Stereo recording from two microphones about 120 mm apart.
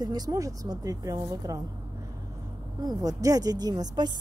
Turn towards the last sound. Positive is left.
turn(degrees=-35)  # may be behind; listen again after turning